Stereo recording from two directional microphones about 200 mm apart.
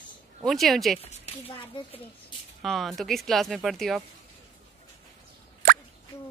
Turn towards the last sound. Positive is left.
turn(degrees=-45)  # may be behind; listen again after turning